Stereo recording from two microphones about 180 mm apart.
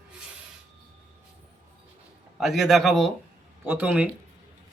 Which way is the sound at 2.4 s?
Centre (ahead or behind).